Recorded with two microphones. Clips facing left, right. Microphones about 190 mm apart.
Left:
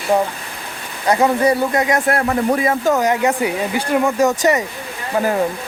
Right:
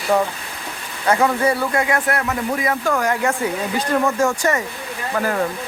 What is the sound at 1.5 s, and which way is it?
Speech, 25° left (ahead or behind).